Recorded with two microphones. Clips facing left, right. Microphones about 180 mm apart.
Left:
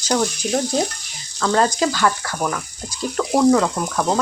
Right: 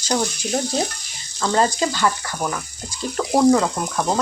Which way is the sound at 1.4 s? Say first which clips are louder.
Left 1 dB; 5° right (ahead or behind).